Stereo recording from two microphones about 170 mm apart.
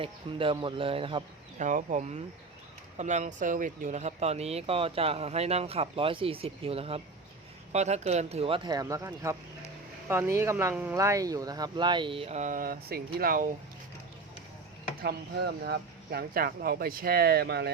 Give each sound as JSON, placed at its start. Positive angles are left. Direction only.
{"t": 0.0, "sound": "speech", "side_deg": -30}
{"t": 1.5, "sound": "speech", "side_deg": -45}
{"t": 15.0, "sound": "speech", "side_deg": -75}